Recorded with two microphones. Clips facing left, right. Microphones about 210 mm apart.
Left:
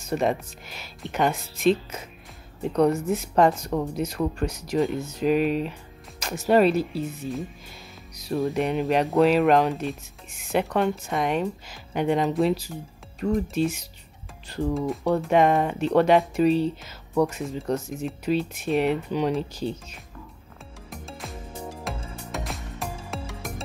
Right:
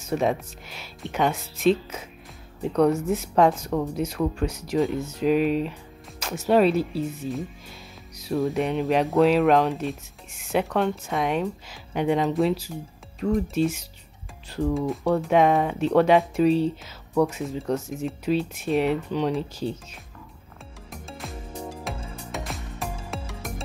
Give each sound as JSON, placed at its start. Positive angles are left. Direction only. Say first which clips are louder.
{"t": 0.1, "sound": "speech", "louder": "even", "side_deg": 0}
{"t": 8.2, "sound": "speech", "louder": "right 1 dB", "side_deg": 0}
{"t": 20.9, "sound": "music", "louder": "even", "side_deg": 0}